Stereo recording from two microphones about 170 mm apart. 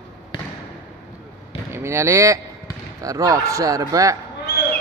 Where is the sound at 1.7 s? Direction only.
15° right (ahead or behind).